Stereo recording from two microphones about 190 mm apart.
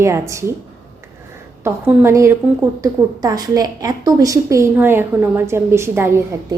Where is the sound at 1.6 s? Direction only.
10° right (ahead or behind).